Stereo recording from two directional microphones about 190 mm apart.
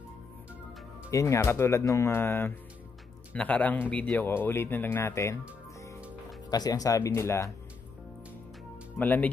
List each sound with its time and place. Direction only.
1.1 s speech: 15° left (ahead or behind)
6.5 s speech: 20° left (ahead or behind)
8.9 s speech: 10° left (ahead or behind)